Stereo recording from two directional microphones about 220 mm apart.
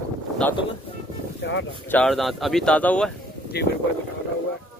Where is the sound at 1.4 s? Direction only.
55° left (ahead or behind).